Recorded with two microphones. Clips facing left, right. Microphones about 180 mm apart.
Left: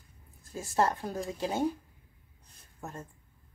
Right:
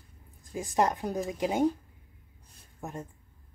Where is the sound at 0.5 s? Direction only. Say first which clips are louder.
Right 1 dB; 15° right (ahead or behind).